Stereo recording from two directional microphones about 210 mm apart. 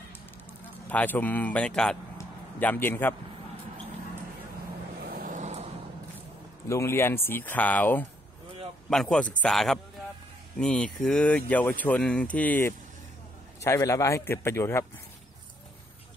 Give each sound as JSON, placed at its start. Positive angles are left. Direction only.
{"t": 0.8, "sound": "speech", "side_deg": 10}
{"t": 2.1, "sound": "a sound", "side_deg": 10}
{"t": 5.0, "sound": "vehicle", "side_deg": -40}
{"t": 6.7, "sound": "speech", "side_deg": 10}